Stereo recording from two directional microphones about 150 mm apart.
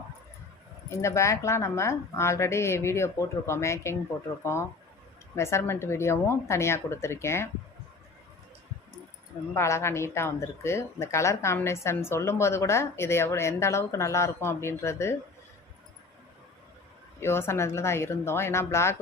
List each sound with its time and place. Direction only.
0.9 s a woman's voice: 20° left (ahead or behind)
5.3 s a woman's voice: 20° left (ahead or behind)
9.6 s a woman's voice: 20° left (ahead or behind)
17.2 s a woman's voice: 15° left (ahead or behind)